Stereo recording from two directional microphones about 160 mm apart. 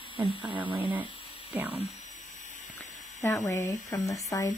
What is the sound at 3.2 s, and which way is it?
Speech, 20° left (ahead or behind).